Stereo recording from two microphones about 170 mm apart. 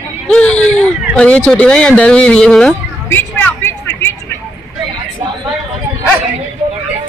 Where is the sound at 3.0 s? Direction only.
15° left (ahead or behind).